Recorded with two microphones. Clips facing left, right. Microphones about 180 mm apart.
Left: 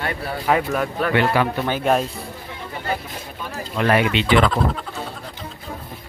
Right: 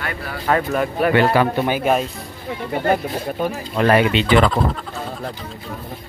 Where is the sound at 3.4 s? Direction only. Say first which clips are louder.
Right 3 dB; 40° right (ahead or behind).